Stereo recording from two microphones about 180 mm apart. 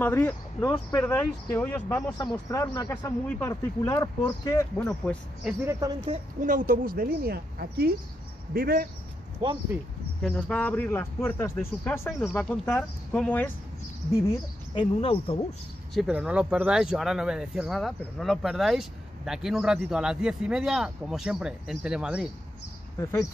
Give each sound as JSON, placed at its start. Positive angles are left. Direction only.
{"t": 0.0, "sound": "a man's voice", "side_deg": 10}
{"t": 4.7, "sound": "speech", "side_deg": 5}
{"t": 5.7, "sound": "speech", "side_deg": -20}
{"t": 6.4, "sound": "a woman's voice", "side_deg": -45}
{"t": 9.4, "sound": "speech", "side_deg": -25}
{"t": 10.2, "sound": "speech", "side_deg": 5}
{"t": 12.2, "sound": "speech", "side_deg": 5}
{"t": 14.7, "sound": "speech", "side_deg": 30}
{"t": 15.9, "sound": "speech", "side_deg": -5}